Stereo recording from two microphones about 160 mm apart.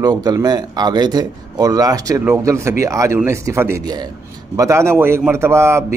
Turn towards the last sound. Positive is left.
turn(degrees=-15)  # may be behind; listen again after turning